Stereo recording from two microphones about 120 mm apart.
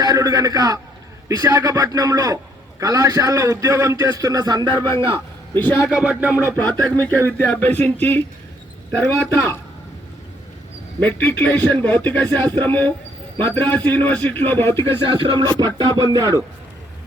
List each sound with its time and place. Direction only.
0.0 s a man's voice: 30° right (ahead or behind)
4.8 s a man's voice: 20° left (ahead or behind)
5.9 s music: 10° right (ahead or behind)
6.6 s speech: 15° left (ahead or behind)
11.0 s speech: 15° left (ahead or behind)
15.0 s music: 45° right (ahead or behind)
16.1 s a man's voice: 30° right (ahead or behind)